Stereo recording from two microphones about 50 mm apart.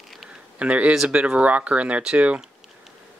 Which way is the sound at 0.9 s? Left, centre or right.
Centre.